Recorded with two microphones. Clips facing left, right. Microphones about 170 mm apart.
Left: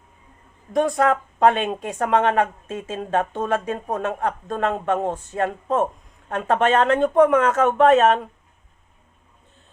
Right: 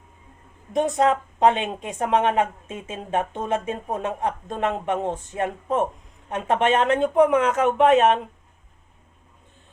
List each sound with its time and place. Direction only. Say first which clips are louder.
0.7 s speech: left 1 dB; 20° right (ahead or behind)